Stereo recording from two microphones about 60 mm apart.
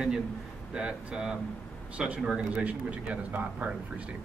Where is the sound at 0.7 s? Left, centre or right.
Centre.